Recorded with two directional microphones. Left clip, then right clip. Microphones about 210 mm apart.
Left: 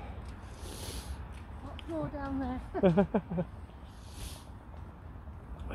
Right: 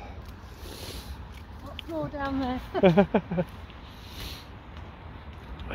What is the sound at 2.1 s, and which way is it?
Speech, 40° right (ahead or behind).